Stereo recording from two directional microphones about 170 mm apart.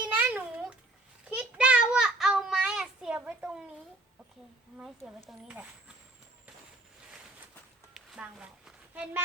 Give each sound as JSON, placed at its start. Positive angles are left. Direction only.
{"t": 0.1, "sound": "babbling", "side_deg": -10}
{"t": 1.4, "sound": "child singing", "side_deg": -5}
{"t": 5.0, "sound": "speech", "side_deg": 0}
{"t": 7.9, "sound": "a sound", "side_deg": -5}